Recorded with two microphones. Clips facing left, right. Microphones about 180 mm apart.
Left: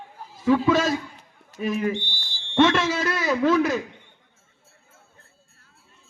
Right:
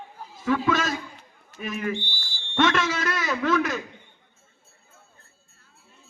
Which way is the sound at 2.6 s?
30° left (ahead or behind).